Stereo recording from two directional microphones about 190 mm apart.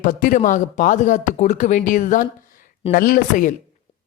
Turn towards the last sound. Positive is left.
turn(degrees=45)  # may be behind; listen again after turning